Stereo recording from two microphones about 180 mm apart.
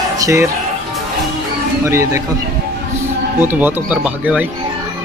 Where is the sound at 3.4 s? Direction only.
10° right (ahead or behind).